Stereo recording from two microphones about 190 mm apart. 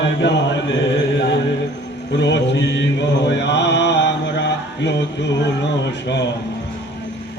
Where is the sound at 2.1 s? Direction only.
70° left (ahead or behind).